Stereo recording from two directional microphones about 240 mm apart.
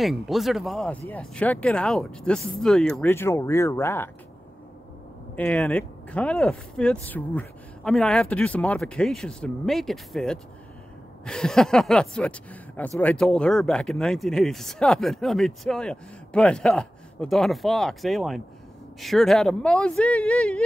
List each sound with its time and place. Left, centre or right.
0.0 s speech: centre
5.3 s speech: centre